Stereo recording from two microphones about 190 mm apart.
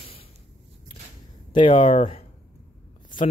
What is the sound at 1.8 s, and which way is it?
Speech, 35° left (ahead or behind).